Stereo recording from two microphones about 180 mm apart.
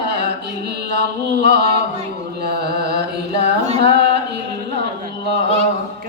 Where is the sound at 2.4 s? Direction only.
65° right (ahead or behind).